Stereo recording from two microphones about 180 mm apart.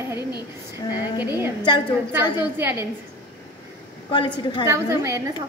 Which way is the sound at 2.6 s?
15° right (ahead or behind).